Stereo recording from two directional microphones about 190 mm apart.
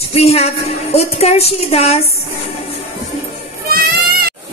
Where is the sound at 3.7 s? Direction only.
50° right (ahead or behind).